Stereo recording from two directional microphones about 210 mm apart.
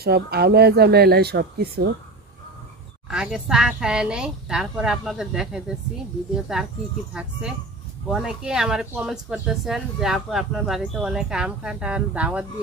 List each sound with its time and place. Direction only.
0.0 s speech: 50° right (ahead or behind)
3.1 s speech: 5° right (ahead or behind)
8.1 s speech: centre (ahead or behind)